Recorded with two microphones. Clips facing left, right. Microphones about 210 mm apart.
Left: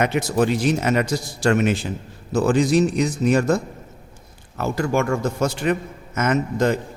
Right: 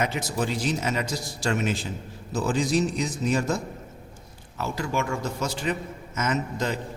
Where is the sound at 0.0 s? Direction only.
60° left (ahead or behind).